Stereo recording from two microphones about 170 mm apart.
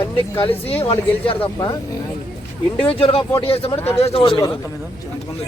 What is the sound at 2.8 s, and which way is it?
Speech, 30° left (ahead or behind).